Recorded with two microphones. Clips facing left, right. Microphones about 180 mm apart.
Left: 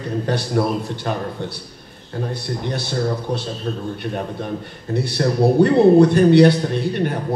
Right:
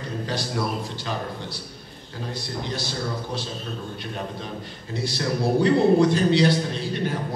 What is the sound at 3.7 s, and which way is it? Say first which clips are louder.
A man's voice: left 8 dB; 45° left (ahead or behind).